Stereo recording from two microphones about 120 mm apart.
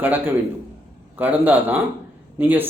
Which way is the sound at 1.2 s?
15° right (ahead or behind).